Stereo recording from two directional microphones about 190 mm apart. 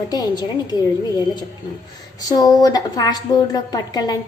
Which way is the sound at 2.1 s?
20° left (ahead or behind).